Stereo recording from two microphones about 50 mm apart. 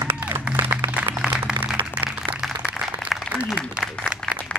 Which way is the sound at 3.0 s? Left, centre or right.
Centre.